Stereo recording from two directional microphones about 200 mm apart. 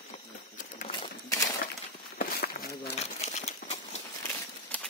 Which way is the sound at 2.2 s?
50° left (ahead or behind).